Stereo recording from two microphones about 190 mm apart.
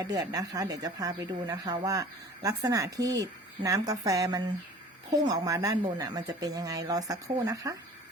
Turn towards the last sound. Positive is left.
turn(degrees=-20)  # may be behind; listen again after turning